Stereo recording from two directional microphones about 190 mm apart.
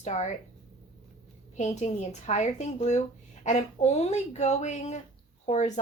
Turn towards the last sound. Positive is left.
turn(degrees=40)  # may be behind; listen again after turning